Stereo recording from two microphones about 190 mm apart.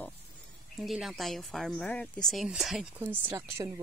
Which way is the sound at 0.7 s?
Centre (ahead or behind).